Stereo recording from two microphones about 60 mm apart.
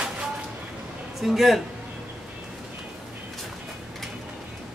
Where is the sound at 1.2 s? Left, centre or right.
Centre.